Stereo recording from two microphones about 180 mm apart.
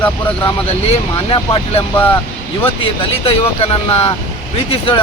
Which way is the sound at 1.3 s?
30° left (ahead or behind).